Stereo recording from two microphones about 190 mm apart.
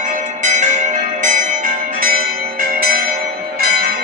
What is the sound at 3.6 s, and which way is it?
Bell, 50° right (ahead or behind).